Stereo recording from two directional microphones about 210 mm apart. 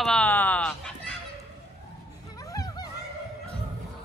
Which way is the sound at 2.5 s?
15° left (ahead or behind).